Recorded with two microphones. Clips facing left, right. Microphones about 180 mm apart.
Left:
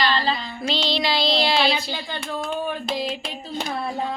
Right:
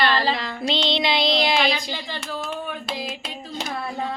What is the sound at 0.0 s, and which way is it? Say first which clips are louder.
Music: right 1 dB; 60° right (ahead or behind).